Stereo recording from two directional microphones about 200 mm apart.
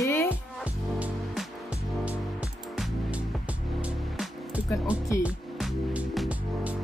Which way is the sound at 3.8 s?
5° right (ahead or behind).